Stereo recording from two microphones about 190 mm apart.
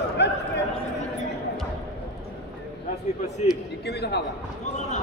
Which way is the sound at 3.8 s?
60° left (ahead or behind).